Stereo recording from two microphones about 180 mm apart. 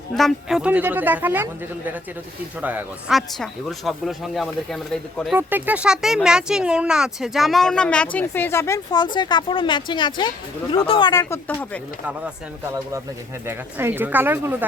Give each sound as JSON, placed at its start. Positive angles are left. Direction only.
{"t": 0.2, "sound": "speech", "side_deg": 0}
{"t": 2.6, "sound": "speech", "side_deg": -10}
{"t": 5.4, "sound": "speech", "side_deg": -10}
{"t": 13.4, "sound": "speech", "side_deg": -15}